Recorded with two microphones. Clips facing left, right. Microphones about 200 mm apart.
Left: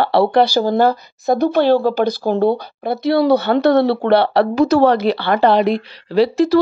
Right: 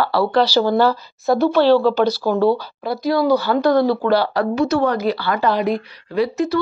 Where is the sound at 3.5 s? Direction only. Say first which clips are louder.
Left 2 dB; 70° left (ahead or behind).